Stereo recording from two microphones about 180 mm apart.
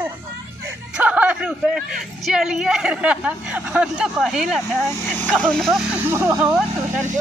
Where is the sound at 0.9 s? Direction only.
10° right (ahead or behind).